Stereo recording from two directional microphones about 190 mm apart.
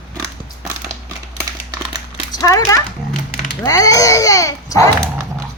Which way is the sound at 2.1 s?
20° left (ahead or behind).